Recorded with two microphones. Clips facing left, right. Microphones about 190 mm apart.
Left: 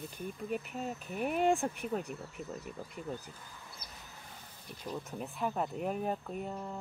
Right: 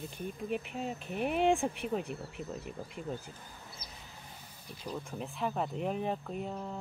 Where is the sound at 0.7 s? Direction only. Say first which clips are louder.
Right 1 dB; 5° left (ahead or behind).